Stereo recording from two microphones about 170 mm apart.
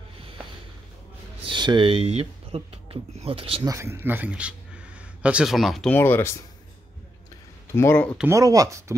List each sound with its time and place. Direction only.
1.4 s speech: 25° right (ahead or behind)
3.6 s speech: 15° right (ahead or behind); by 5.9 s centre (ahead or behind)
5.9 s speech: 10° left (ahead or behind)
7.7 s speech: 15° left (ahead or behind)
8.3 s speech: 20° right (ahead or behind)